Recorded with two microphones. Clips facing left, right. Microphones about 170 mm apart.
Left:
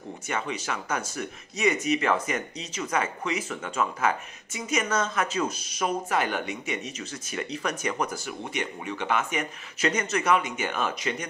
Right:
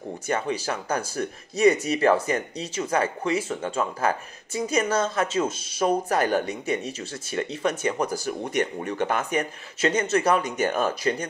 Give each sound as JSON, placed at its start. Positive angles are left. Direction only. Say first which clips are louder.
{"t": 0.3, "sound": "speech", "louder": "right 4 dB", "side_deg": -35}